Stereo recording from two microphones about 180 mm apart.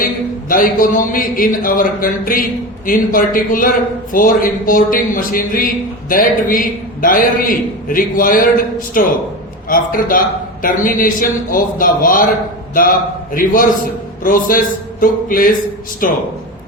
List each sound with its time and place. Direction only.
0.0 s a man's voice: 50° left (ahead or behind)